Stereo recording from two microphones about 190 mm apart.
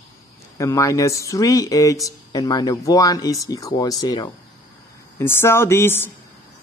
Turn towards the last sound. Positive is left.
turn(degrees=10)  # may be behind; listen again after turning